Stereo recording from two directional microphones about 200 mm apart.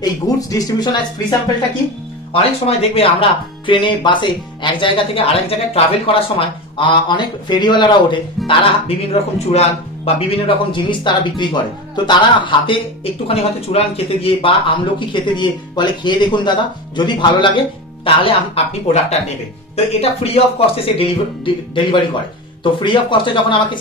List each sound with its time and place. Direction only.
0.0 s speech: 20° left (ahead or behind)
2.3 s speech: 30° left (ahead or behind)